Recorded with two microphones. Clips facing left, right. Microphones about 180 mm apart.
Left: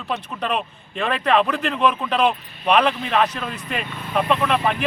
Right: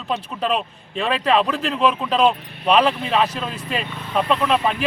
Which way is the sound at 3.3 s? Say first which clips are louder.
Right 2 dB; 30° right (ahead or behind).